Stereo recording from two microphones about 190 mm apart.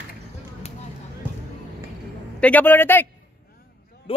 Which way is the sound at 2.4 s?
10° left (ahead or behind).